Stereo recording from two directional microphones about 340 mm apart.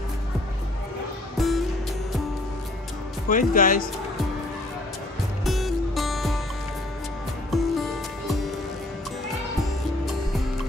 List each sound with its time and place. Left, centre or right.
1.4 s music: centre
3.3 s speech: left
5.4 s music: centre
7.5 s music: centre